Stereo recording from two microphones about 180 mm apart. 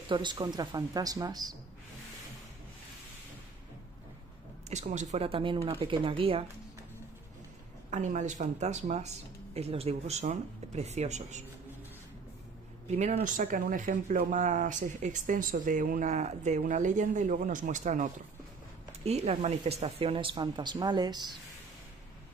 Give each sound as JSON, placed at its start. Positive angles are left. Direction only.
{"t": 0.1, "sound": "speech", "side_deg": -25}
{"t": 4.6, "sound": "speech", "side_deg": -40}
{"t": 7.9, "sound": "speech", "side_deg": -45}
{"t": 12.9, "sound": "speech", "side_deg": -40}